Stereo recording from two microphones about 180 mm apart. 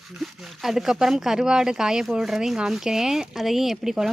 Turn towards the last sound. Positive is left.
turn(degrees=0)  # may be behind; listen again after turning